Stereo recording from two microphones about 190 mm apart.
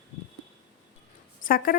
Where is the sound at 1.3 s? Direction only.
50° left (ahead or behind).